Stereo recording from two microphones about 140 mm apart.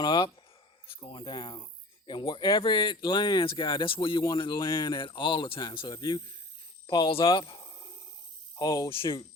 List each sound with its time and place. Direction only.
0.0 s speech: 30° left (ahead or behind)
7.3 s a sound: 35° left (ahead or behind)
8.5 s speech: 30° left (ahead or behind)